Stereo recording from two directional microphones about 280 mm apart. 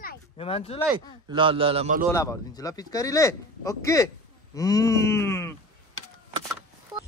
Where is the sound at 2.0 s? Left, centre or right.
Centre.